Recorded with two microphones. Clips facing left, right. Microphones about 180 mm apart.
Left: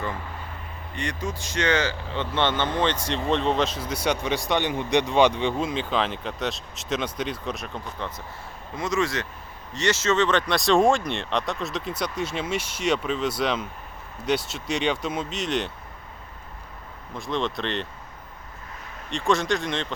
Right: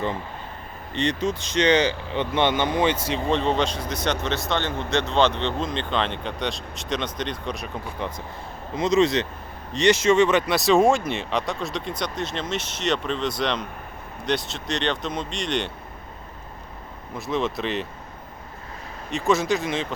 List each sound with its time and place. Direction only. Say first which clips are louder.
0.9 s speech: right 7 dB; 20° right (ahead or behind); by 7.7 s centre (ahead or behind)
7.9 s speech: right 3 dB; 15° right (ahead or behind); by 15.7 s 5° left (ahead or behind)
17.2 s speech: right 2 dB; 5° right (ahead or behind)
19.1 s speech: right 2 dB; 5° right (ahead or behind)